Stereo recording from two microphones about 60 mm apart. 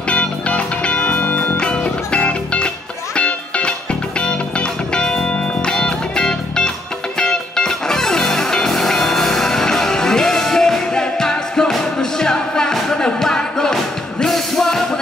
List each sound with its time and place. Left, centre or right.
0.1 s music: centre